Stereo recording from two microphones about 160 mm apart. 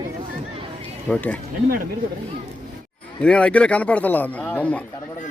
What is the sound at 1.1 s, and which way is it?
Speech, 10° left (ahead or behind).